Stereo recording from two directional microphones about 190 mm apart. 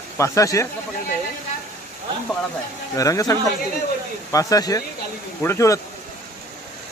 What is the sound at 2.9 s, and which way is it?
Speech, 20° left (ahead or behind).